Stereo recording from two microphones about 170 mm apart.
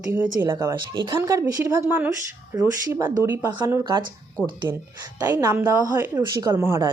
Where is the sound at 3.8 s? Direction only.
25° right (ahead or behind).